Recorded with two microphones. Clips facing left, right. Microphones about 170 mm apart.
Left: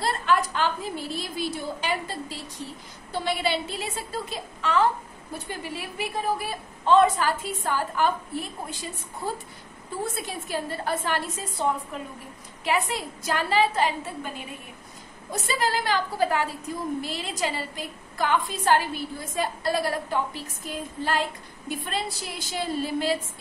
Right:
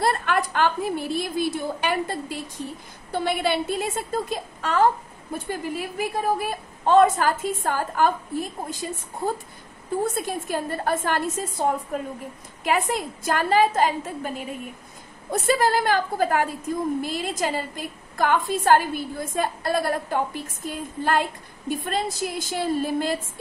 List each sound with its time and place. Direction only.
0.0 s a woman's voice: 55° right (ahead or behind)
10.1 s a woman's voice: 50° right (ahead or behind)
12.6 s a woman's voice: 50° right (ahead or behind)
15.3 s a woman's voice: 50° right (ahead or behind)